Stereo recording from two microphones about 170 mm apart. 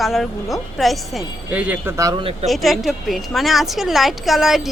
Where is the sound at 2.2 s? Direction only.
35° right (ahead or behind).